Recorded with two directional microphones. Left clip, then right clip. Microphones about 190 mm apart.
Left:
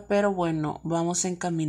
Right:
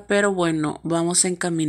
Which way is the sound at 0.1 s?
10° right (ahead or behind).